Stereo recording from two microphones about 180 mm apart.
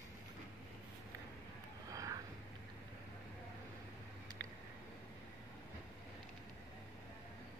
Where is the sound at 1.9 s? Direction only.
20° right (ahead or behind).